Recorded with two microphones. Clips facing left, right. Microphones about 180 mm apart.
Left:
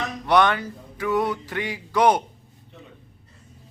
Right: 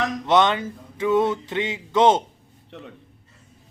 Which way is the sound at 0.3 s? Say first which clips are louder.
Even; 20° right (ahead or behind).